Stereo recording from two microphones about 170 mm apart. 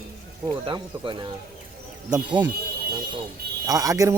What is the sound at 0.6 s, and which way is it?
Speech, 30° right (ahead or behind).